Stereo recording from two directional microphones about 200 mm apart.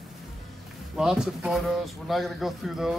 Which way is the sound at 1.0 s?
5° right (ahead or behind).